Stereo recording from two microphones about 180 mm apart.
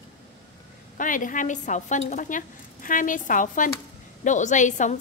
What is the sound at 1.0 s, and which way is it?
Speech, 45° left (ahead or behind).